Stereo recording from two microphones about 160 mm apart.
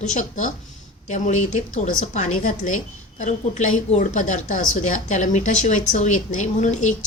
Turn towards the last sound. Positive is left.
turn(degrees=50)  # may be behind; listen again after turning